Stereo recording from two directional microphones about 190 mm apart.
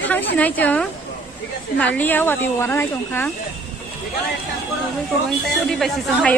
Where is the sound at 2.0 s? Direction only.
10° left (ahead or behind).